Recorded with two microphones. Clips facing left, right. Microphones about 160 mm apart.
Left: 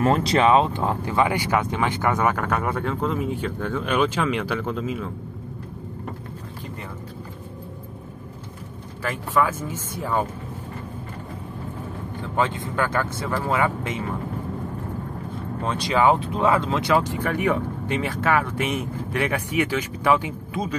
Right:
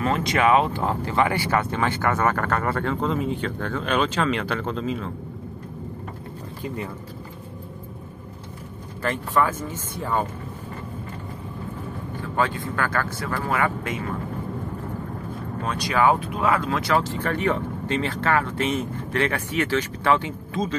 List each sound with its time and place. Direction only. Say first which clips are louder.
0.0 s speech: left 3 dB; 40° left (ahead or behind); by 5.1 s 10° left (ahead or behind)
9.0 s speech: even; 5° left (ahead or behind)
12.2 s speech: left 1 dB; 20° left (ahead or behind)
15.6 s speech: left 1 dB; 25° left (ahead or behind)